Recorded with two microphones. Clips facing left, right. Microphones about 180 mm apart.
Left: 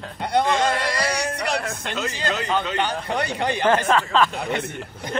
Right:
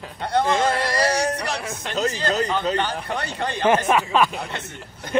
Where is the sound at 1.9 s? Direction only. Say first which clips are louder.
Right 5 dB; 40° right (ahead or behind).